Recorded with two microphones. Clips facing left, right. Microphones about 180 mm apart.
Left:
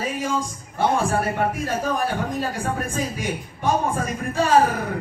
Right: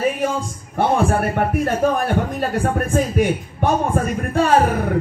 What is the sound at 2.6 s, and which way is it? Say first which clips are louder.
Speech: right 6 dB; 55° right (ahead or behind).